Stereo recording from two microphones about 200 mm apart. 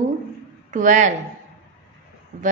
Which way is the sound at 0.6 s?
40° right (ahead or behind).